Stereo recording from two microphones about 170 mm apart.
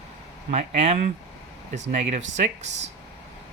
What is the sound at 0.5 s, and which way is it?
Speech, 40° right (ahead or behind).